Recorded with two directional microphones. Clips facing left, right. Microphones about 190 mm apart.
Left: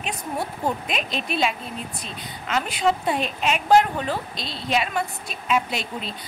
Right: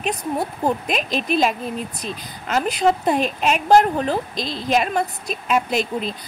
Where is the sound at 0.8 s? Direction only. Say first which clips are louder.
Right 5 dB; 45° right (ahead or behind).